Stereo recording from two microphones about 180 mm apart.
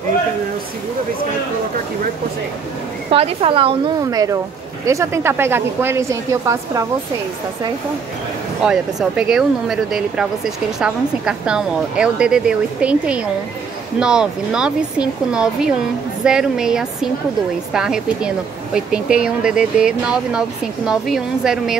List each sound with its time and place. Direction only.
3.1 s a woman's voice: 35° right (ahead or behind); by 6.9 s 15° right (ahead or behind)
8.6 s speech: 5° right (ahead or behind)